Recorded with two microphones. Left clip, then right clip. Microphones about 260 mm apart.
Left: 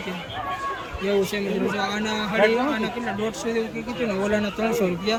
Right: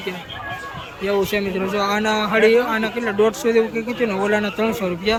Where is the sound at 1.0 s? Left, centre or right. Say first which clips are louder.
Right 4 dB; centre.